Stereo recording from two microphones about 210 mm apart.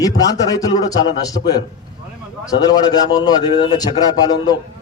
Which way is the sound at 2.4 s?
20° left (ahead or behind).